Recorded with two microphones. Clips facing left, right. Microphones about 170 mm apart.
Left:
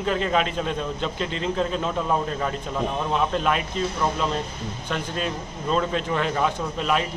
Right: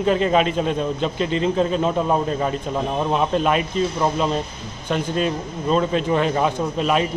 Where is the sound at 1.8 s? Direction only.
25° right (ahead or behind).